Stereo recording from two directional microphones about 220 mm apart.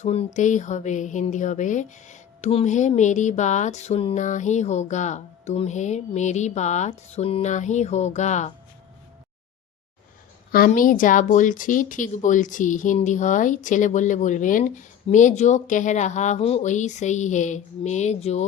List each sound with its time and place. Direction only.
0.0 s speech: 25° left (ahead or behind)
10.5 s speech: 40° left (ahead or behind)